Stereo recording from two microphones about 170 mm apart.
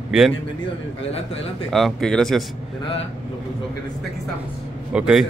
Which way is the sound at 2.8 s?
35° left (ahead or behind).